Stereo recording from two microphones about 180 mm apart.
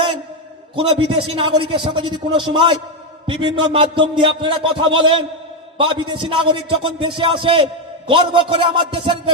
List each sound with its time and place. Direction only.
0.8 s a man's voice: 30° right (ahead or behind)